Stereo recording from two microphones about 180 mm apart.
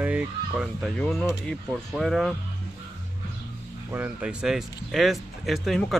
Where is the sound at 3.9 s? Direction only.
10° right (ahead or behind).